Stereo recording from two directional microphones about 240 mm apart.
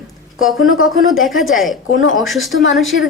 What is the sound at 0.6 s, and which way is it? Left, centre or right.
Speech, left.